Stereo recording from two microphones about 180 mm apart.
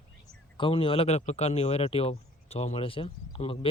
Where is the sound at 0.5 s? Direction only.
30° left (ahead or behind).